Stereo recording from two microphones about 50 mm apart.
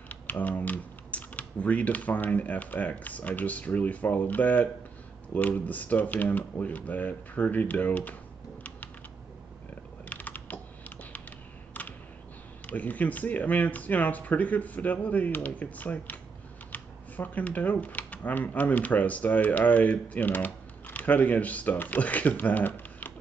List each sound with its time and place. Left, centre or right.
0.1 s speech: left
10.0 s typing: left
12.6 s speech: left